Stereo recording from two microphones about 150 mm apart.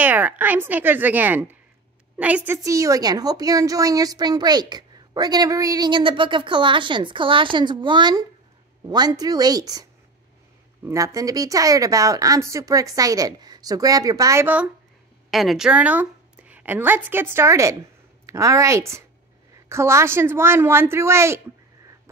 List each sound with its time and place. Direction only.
0.0 s a woman's voice: 10° right (ahead or behind)
10.9 s a woman's voice: 20° right (ahead or behind)
15.3 s a woman's voice: centre (ahead or behind)